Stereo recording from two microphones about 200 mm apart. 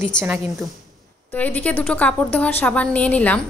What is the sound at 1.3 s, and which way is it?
A woman's voice, 10° left (ahead or behind).